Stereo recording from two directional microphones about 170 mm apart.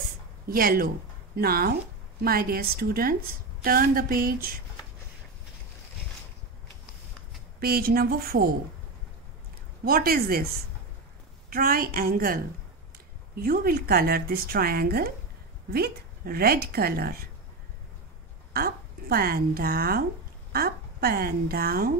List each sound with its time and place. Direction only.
0.5 s a woman's voice: 60° right (ahead or behind)
7.6 s a woman's voice: 65° right (ahead or behind)
9.8 s a woman's voice: 60° right (ahead or behind)
11.5 s a woman's voice: 60° right (ahead or behind)
18.5 s a woman's voice: 60° right (ahead or behind)